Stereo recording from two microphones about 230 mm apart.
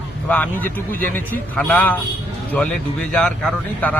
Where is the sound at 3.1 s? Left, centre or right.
Centre.